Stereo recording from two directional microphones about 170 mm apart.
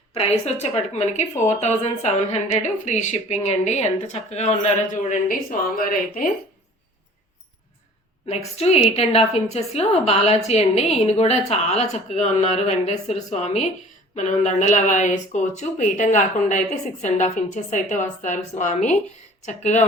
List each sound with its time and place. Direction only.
0.1 s a woman's voice: 35° left (ahead or behind); by 6.3 s 55° left (ahead or behind)
8.3 s a woman's voice: 40° left (ahead or behind)